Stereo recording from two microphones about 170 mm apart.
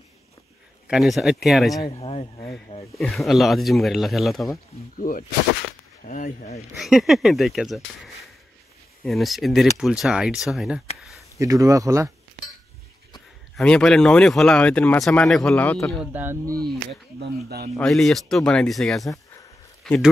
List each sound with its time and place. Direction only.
0.8 s speech: centre (ahead or behind)
1.9 s speech: 35° left (ahead or behind)
3.0 s speech: centre (ahead or behind)
4.9 s speech: 55° left (ahead or behind)
6.8 s speech: centre (ahead or behind)
9.0 s speech: centre (ahead or behind)
11.3 s speech: 20° right (ahead or behind)
13.6 s speech: 5° left (ahead or behind)
16.0 s speech: 10° right (ahead or behind)
17.2 s speech: 70° right (ahead or behind)
17.7 s speech: 5° left (ahead or behind)